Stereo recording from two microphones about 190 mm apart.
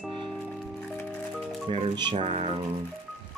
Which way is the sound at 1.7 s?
25° right (ahead or behind).